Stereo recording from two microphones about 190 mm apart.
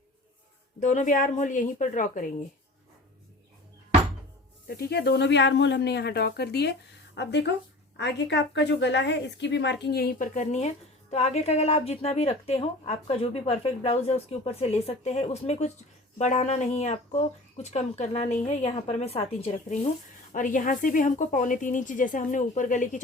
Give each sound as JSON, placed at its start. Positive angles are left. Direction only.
{"t": 0.8, "sound": "a woman's voice", "side_deg": 40}
{"t": 4.7, "sound": "a woman's voice", "side_deg": 55}
{"t": 20.3, "sound": "speech", "side_deg": 45}